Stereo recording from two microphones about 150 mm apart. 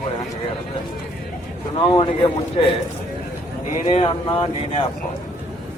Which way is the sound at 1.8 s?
35° left (ahead or behind).